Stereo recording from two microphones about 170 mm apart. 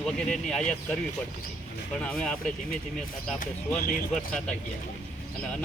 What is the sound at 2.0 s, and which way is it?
Speech, 5° left (ahead or behind).